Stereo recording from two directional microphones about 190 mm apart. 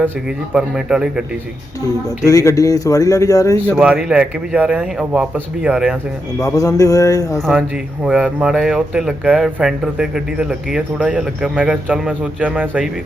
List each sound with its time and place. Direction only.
0.3 s speech: 5° right (ahead or behind)
2.0 s speech: 15° left (ahead or behind)
3.8 s speech: 5° right (ahead or behind)
6.4 s speech: 15° left (ahead or behind)
8.0 s speech: 5° right (ahead or behind)